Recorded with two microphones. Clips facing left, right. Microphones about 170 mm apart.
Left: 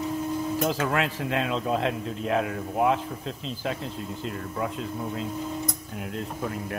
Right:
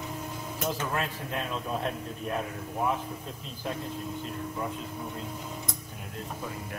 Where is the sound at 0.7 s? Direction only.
90° left.